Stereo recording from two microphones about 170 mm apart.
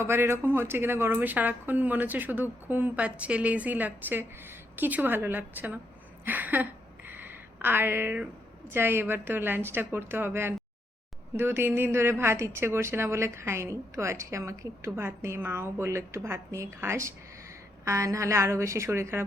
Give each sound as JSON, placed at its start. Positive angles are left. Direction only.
{"t": 0.0, "sound": "speech", "side_deg": -15}
{"t": 6.2, "sound": "a sound", "side_deg": -10}
{"t": 8.7, "sound": "speech", "side_deg": -15}